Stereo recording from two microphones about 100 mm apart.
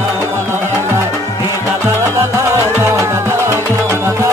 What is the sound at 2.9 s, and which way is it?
Music, 25° right (ahead or behind).